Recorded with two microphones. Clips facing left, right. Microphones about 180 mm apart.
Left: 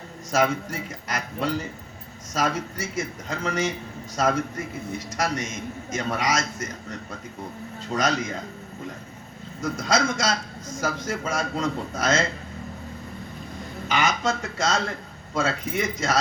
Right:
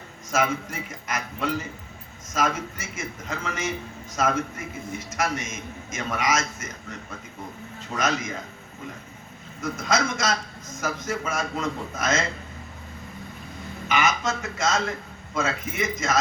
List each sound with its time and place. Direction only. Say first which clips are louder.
0.3 s a man's voice: left 2 dB; 35° left (ahead or behind)
9.6 s a man's voice: left 1 dB; 35° left (ahead or behind)
13.8 s a man's voice: even; 35° left (ahead or behind)